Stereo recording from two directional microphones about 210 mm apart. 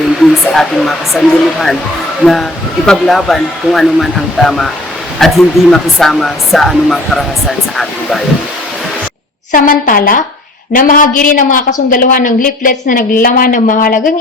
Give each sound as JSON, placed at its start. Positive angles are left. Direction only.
{"t": 0.2, "sound": "speech", "side_deg": 0}
{"t": 9.5, "sound": "a woman's voice", "side_deg": 40}